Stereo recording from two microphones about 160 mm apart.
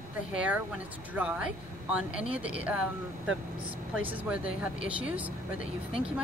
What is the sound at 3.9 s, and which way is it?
Speech, 10° right (ahead or behind).